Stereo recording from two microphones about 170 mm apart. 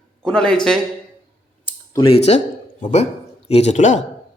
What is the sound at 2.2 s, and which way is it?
Speech, 40° left (ahead or behind).